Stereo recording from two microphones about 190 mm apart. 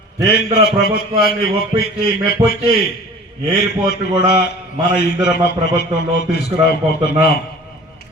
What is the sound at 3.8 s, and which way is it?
A man's voice, 60° left (ahead or behind).